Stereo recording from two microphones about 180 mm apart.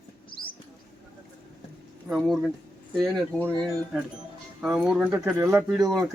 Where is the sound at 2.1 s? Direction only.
Centre (ahead or behind).